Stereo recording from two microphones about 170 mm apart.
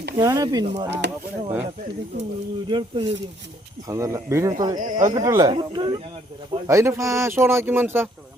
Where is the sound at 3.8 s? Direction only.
20° right (ahead or behind).